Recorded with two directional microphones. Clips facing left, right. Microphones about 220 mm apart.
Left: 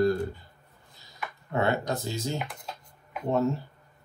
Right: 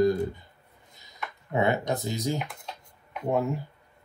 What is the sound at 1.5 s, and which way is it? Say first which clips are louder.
Speech: right 1 dB; 20° right (ahead or behind).